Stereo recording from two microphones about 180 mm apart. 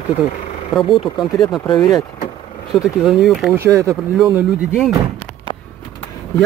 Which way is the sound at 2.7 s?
5° right (ahead or behind).